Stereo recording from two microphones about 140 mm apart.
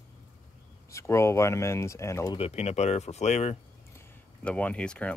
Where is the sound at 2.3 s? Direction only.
45° left (ahead or behind).